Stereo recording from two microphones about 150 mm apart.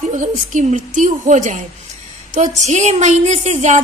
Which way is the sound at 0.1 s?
55° right (ahead or behind).